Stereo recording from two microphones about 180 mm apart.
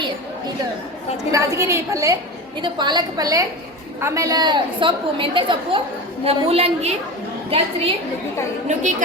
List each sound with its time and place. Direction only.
1.3 s a woman's voice: 15° right (ahead or behind); by 9.0 s 40° right (ahead or behind)